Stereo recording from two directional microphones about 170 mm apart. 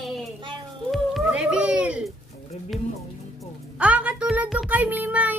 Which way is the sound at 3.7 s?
5° right (ahead or behind).